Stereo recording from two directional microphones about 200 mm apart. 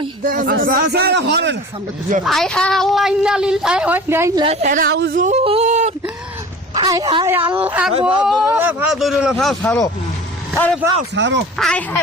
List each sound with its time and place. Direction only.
0.3 s a woman's voice: 45° right (ahead or behind); by 1.5 s 60° right (ahead or behind)
2.2 s a woman's voice: centre (ahead or behind)
4.4 s a woman's voice: 40° right (ahead or behind); by 5.1 s 60° right (ahead or behind)
5.1 s speech: 35° right (ahead or behind)
6.7 s a woman's voice: 20° right (ahead or behind)
7.3 s a woman's voice: 10° right (ahead or behind)
9.6 s speech: 15° left (ahead or behind)
11.1 s a man's voice: 65° right (ahead or behind)
11.5 s a woman's voice: 5° left (ahead or behind)